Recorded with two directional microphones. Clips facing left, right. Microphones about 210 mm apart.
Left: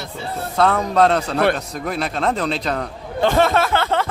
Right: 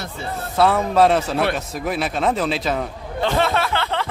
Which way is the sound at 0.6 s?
5° right (ahead or behind).